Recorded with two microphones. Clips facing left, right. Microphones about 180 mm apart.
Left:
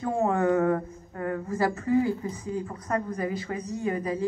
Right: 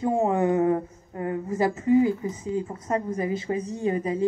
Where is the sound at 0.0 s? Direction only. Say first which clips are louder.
Right 2 dB; 20° right (ahead or behind).